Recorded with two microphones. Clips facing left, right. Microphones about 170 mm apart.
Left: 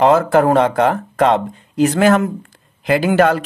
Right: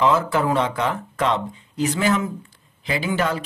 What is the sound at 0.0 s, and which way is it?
Speech, 55° left (ahead or behind).